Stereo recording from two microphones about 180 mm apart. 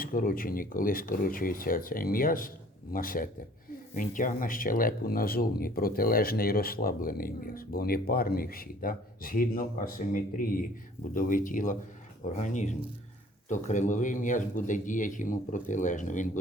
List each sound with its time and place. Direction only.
0.0 s speech: 50° left (ahead or behind)